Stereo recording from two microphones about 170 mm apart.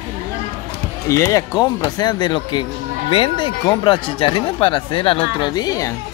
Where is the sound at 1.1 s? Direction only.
20° left (ahead or behind).